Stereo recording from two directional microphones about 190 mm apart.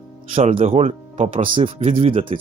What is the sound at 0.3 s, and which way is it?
Speech, 35° right (ahead or behind).